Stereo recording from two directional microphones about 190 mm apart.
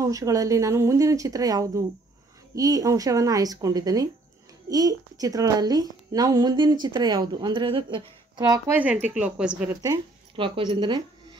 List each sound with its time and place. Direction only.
0.0 s a woman's voice: 20° right (ahead or behind)
9.0 s speech: 5° right (ahead or behind)
9.8 s speech: 25° right (ahead or behind)